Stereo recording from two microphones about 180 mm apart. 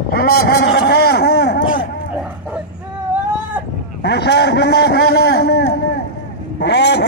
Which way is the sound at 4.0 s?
65° left (ahead or behind).